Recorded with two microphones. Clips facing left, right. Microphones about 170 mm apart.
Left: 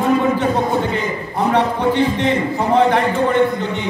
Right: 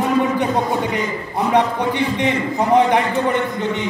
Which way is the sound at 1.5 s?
15° right (ahead or behind).